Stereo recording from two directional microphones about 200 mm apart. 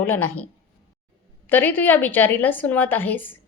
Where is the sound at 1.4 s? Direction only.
10° left (ahead or behind).